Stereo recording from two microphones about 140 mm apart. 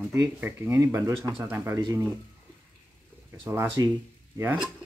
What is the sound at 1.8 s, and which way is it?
Speech, 30° right (ahead or behind).